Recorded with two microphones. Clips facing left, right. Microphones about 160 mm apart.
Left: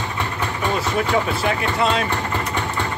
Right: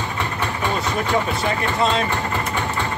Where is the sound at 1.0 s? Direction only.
Centre (ahead or behind).